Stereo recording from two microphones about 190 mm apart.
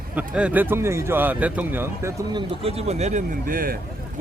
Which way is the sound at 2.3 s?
30° right (ahead or behind).